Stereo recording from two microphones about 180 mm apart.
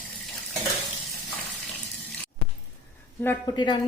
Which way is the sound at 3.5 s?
25° left (ahead or behind).